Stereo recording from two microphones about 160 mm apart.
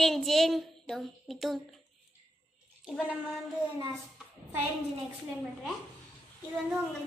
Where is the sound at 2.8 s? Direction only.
5° left (ahead or behind).